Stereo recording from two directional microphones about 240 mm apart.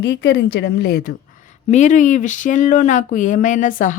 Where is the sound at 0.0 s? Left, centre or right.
Left.